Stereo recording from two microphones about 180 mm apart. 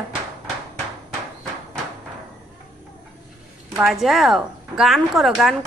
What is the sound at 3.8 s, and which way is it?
A woman's voice, centre (ahead or behind).